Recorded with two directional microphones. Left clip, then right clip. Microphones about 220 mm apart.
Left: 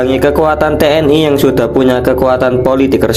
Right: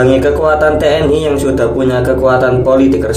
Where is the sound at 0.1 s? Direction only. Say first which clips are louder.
Even; 45° left (ahead or behind).